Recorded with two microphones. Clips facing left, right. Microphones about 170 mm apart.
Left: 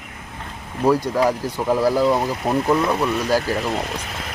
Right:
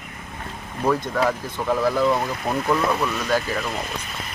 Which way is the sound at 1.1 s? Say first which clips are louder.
Left 3 dB; 10° left (ahead or behind).